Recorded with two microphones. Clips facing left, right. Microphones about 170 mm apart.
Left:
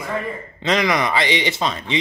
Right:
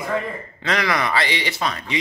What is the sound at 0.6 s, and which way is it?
A man's voice, 20° left (ahead or behind).